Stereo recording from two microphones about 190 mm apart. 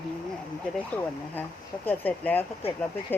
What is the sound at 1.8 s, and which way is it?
Speech, 10° left (ahead or behind).